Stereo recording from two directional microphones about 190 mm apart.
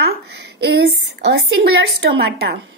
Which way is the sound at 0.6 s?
60° right (ahead or behind).